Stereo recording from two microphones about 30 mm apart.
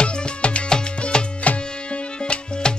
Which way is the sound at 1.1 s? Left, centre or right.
Left.